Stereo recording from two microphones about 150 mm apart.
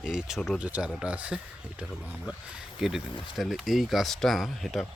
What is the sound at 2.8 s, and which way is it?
Speech, centre (ahead or behind).